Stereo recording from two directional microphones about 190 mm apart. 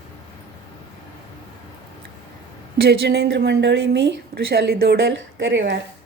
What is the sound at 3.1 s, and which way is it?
Speech, 65° right (ahead or behind).